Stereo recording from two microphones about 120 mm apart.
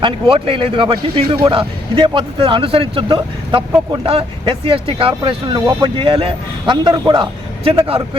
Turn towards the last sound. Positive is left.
turn(degrees=-50)  # may be behind; listen again after turning